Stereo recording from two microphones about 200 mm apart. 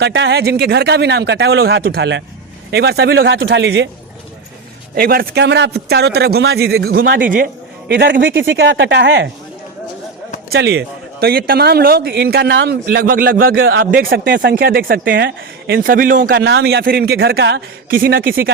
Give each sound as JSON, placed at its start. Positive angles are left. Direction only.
{"t": 0.0, "sound": "speech", "side_deg": -60}
{"t": 4.9, "sound": "speech", "side_deg": -50}
{"t": 8.4, "sound": "speech", "side_deg": -70}
{"t": 10.5, "sound": "speech", "side_deg": -60}